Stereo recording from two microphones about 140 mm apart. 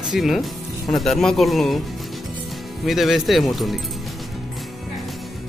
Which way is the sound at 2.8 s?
Centre (ahead or behind).